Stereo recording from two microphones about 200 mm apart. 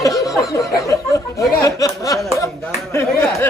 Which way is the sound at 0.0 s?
15° left (ahead or behind).